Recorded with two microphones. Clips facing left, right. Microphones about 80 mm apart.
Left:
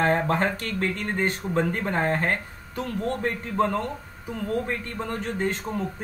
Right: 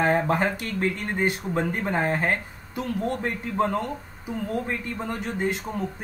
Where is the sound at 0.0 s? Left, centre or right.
Centre.